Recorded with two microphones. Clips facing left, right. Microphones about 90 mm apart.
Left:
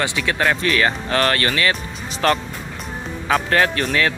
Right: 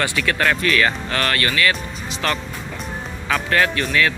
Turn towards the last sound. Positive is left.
turn(degrees=35)  # may be behind; listen again after turning